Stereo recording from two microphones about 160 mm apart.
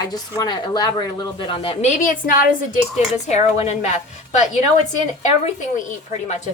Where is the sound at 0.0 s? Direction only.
25° left (ahead or behind).